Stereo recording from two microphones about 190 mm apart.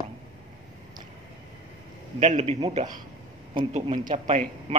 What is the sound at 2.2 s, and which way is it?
A man's voice, 35° right (ahead or behind).